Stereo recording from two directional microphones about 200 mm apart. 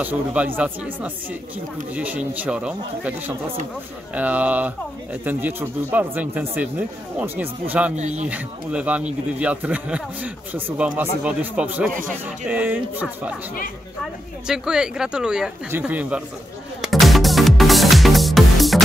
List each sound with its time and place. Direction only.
0.0 s speech: 10° right (ahead or behind)
7.9 s speech: 35° right (ahead or behind)
8.3 s speech: 5° right (ahead or behind)
14.5 s speech: 5° right (ahead or behind)
16.8 s music: centre (ahead or behind)